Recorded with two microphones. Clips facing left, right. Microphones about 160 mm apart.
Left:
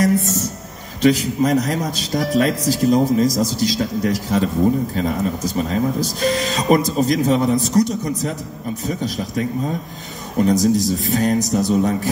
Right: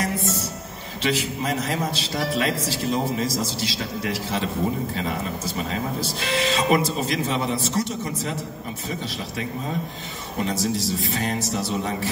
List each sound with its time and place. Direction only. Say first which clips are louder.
0.0 s music: left 8 dB; 40° left (ahead or behind)
1.0 s a man's voice: left 9 dB; 40° left (ahead or behind)